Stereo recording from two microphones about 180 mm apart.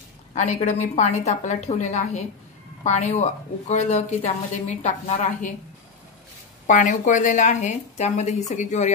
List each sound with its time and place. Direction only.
0.3 s a woman's voice: 40° left (ahead or behind)
6.7 s a woman's voice: 45° left (ahead or behind)